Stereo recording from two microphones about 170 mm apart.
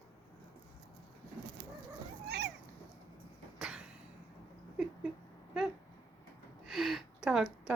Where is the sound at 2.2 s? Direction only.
85° right.